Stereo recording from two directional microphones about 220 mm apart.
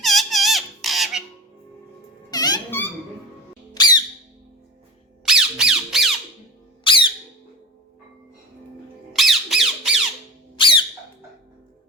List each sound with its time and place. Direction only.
0.0 s squeak: centre (ahead or behind)
2.3 s squeak: 15° left (ahead or behind)
3.8 s squawk: 20° left (ahead or behind)
5.2 s squawk: 5° right (ahead or behind)
6.8 s squeak: 20° left (ahead or behind)
9.1 s squawk: centre (ahead or behind)
10.6 s squeak: 20° left (ahead or behind)